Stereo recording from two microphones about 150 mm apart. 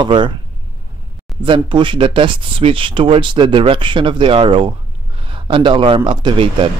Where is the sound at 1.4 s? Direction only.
35° right (ahead or behind).